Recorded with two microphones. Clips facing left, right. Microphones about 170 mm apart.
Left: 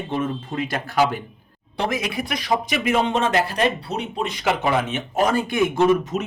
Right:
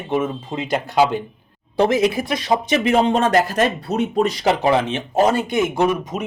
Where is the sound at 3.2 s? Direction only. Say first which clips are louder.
Right 3 dB; 45° right (ahead or behind).